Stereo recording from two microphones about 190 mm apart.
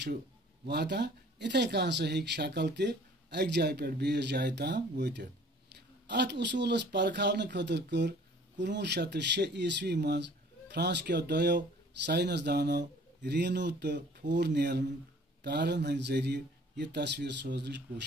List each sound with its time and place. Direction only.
0.7 s speech: 65° right (ahead or behind)